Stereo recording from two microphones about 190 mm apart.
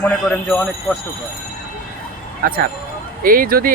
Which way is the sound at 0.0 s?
5° left (ahead or behind).